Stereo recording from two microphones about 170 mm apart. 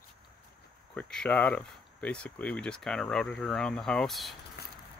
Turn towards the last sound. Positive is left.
turn(degrees=0)  # may be behind; listen again after turning